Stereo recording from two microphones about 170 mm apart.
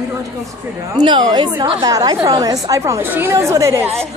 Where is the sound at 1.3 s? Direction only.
25° right (ahead or behind).